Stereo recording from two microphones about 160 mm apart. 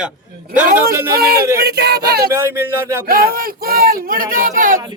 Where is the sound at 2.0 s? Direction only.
75° right (ahead or behind).